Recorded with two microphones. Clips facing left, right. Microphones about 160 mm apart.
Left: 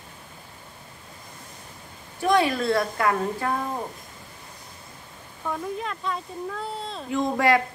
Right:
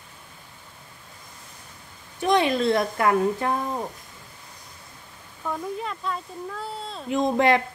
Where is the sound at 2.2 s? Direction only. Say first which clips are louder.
Right 1 dB; 20° right (ahead or behind).